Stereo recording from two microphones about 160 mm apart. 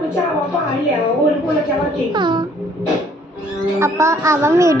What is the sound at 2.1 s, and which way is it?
Speech, 30° right (ahead or behind).